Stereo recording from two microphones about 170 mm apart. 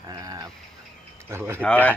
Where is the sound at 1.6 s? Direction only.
10° left (ahead or behind).